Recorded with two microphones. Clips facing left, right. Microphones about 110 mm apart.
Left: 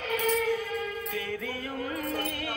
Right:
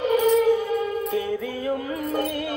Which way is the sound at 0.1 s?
20° right (ahead or behind).